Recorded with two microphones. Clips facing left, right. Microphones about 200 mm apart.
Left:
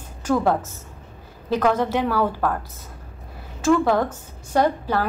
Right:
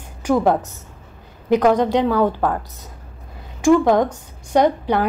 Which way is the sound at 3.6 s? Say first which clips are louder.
Right 4 dB; 15° right (ahead or behind).